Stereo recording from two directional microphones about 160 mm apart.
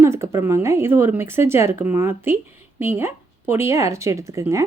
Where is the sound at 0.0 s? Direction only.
15° right (ahead or behind).